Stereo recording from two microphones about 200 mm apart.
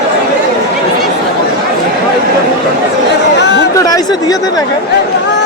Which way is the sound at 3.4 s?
60° left (ahead or behind).